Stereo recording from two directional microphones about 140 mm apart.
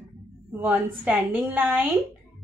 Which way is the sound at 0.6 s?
10° right (ahead or behind).